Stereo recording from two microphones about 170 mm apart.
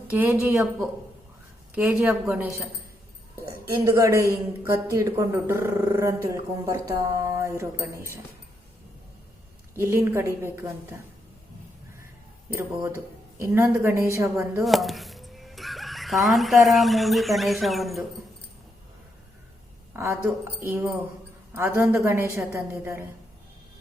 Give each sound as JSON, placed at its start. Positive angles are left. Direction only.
{"t": 0.1, "sound": "a man's voice", "side_deg": -10}
{"t": 1.7, "sound": "a man's voice", "side_deg": -10}
{"t": 3.8, "sound": "a man's voice", "side_deg": -15}
{"t": 9.7, "sound": "a man's voice", "side_deg": -15}
{"t": 12.5, "sound": "a man's voice", "side_deg": -15}
{"t": 14.6, "sound": "speech", "side_deg": 0}
{"t": 20.0, "sound": "a man's voice", "side_deg": -15}